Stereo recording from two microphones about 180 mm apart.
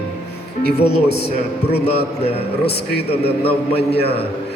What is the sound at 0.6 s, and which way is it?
Speech, 65° left (ahead or behind).